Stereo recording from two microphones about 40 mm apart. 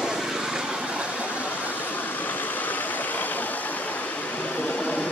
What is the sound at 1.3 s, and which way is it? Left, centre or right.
Vehicle, left.